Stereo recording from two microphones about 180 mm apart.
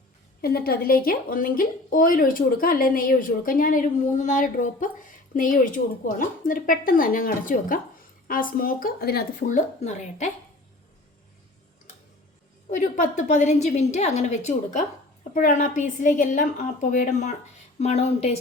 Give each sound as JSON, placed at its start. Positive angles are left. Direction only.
{"t": 0.4, "sound": "speech", "side_deg": 60}
{"t": 9.5, "sound": "speech", "side_deg": 40}
{"t": 12.7, "sound": "a woman's voice", "side_deg": 45}